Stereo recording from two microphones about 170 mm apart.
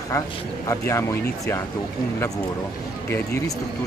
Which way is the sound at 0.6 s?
15° left (ahead or behind).